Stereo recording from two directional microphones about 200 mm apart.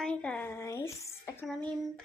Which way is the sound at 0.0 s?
5° left (ahead or behind).